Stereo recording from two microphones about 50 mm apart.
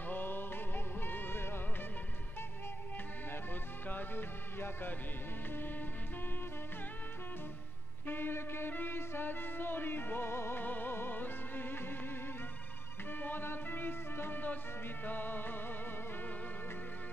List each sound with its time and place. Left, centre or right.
0.1 s music: left
3.8 s music: left
8.1 s music: left
10.6 s music: left
13.2 s music: left